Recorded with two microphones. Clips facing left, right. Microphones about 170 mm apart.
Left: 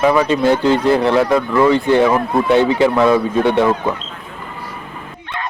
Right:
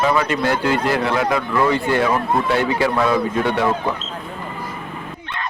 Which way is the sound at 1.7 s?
20° left (ahead or behind).